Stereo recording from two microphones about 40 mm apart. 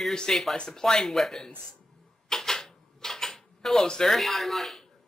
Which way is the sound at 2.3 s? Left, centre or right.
Centre.